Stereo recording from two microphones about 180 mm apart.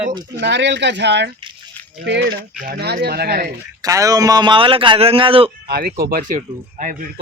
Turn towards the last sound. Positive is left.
turn(degrees=-50)  # may be behind; listen again after turning